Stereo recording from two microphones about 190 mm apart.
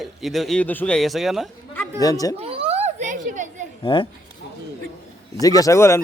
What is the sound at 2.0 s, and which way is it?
Speech, 20° left (ahead or behind).